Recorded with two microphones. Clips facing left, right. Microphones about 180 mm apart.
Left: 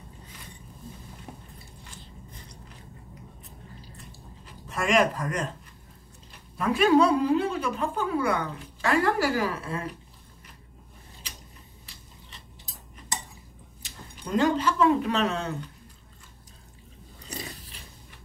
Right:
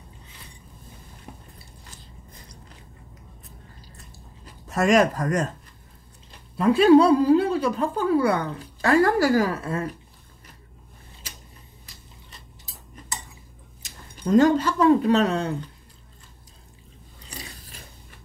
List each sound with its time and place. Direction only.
4.6 s speech: 40° right (ahead or behind)
6.6 s speech: 30° right (ahead or behind)
13.8 s speech: 45° right (ahead or behind)